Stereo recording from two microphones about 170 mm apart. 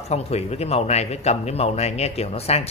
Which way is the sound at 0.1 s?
40° left (ahead or behind).